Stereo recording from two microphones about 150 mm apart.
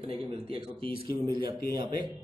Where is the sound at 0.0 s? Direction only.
40° right (ahead or behind).